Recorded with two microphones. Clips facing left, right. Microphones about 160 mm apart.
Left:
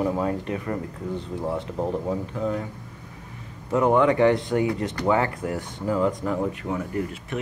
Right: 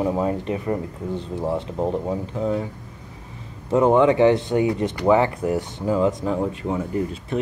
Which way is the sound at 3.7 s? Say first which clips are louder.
Right 3 dB; 25° right (ahead or behind).